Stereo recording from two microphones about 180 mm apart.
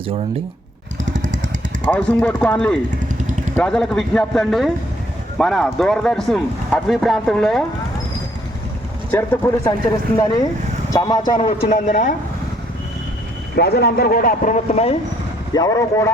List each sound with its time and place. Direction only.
1.1 s vehicle: 45° right (ahead or behind)
1.9 s speech: 10° left (ahead or behind)
9.1 s speech: 10° left (ahead or behind)
10.9 s a man's voice: 20° left (ahead or behind)
11.3 s a man's voice: 30° left (ahead or behind)
13.6 s speech: 65° left (ahead or behind); by 14.9 s 35° left (ahead or behind)
15.5 s speech: 20° left (ahead or behind)